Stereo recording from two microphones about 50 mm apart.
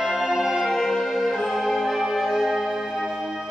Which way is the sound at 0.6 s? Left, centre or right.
Centre.